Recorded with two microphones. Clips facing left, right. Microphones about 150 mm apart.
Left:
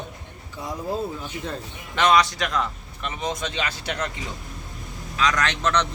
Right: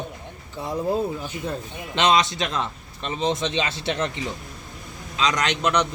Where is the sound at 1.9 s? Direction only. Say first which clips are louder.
Left 1 dB; 25° right (ahead or behind).